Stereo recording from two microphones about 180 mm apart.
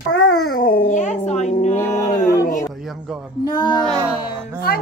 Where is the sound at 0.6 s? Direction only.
50° left (ahead or behind).